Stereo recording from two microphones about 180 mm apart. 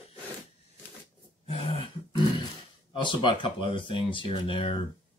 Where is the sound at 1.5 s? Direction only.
30° left (ahead or behind).